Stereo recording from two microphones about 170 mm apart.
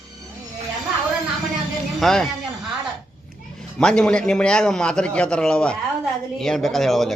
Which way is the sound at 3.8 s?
5° left (ahead or behind).